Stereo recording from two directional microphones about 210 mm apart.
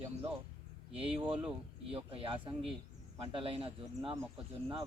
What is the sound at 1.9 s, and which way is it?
Speech, 25° right (ahead or behind).